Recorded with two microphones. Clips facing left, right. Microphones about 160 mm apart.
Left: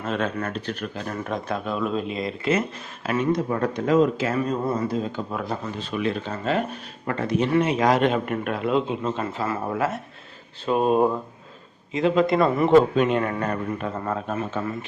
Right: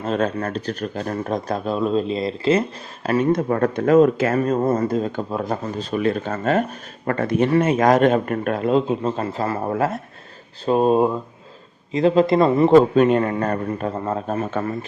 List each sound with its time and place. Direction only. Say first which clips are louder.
0.0 s speech: right 4 dB; 35° right (ahead or behind)
3.5 s a man's voice: right 7 dB; 50° right (ahead or behind)